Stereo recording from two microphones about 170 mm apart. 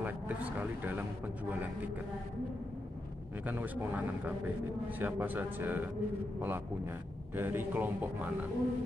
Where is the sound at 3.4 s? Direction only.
10° right (ahead or behind).